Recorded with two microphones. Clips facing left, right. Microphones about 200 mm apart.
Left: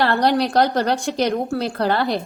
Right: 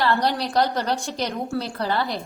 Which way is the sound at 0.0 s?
65° left (ahead or behind).